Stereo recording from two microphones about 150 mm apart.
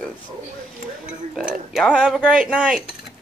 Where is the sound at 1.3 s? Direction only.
Centre (ahead or behind).